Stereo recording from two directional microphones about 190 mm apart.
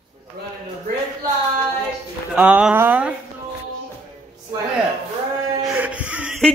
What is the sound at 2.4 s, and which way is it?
Speech, 5° right (ahead or behind).